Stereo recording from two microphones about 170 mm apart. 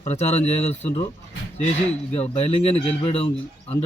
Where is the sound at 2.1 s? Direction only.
35° left (ahead or behind).